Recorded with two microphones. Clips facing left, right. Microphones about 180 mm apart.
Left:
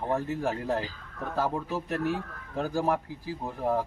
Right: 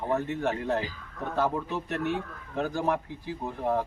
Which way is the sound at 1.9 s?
35° left (ahead or behind).